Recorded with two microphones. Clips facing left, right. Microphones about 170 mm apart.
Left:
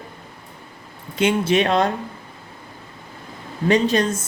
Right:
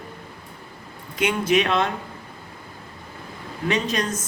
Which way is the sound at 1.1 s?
30° left (ahead or behind).